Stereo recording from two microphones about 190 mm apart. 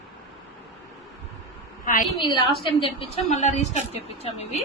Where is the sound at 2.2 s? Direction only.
25° left (ahead or behind).